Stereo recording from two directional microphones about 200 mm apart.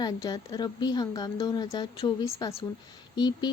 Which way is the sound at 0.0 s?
20° left (ahead or behind).